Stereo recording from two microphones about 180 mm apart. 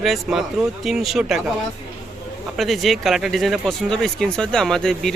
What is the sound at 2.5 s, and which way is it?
Speech, centre (ahead or behind).